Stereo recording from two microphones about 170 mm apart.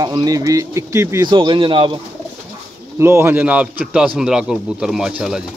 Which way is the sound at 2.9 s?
15° right (ahead or behind).